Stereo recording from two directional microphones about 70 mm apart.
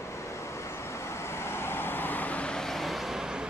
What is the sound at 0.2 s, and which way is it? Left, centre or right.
Vehicle, left.